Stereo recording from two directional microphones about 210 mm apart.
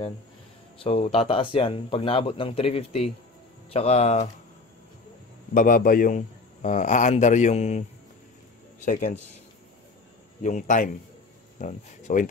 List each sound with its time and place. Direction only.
0.8 s speech: 30° left (ahead or behind)
5.5 s a man's voice: 40° left (ahead or behind)
10.4 s a man's voice: 35° left (ahead or behind)